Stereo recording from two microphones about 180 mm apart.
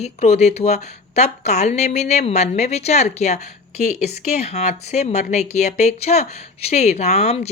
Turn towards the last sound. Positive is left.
turn(degrees=35)  # may be behind; listen again after turning